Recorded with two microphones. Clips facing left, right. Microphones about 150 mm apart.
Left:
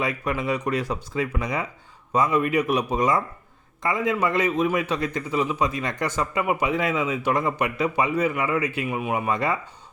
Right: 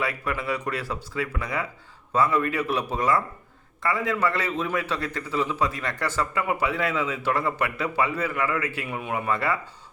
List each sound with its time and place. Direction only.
0.0 s a man's voice: 20° left (ahead or behind)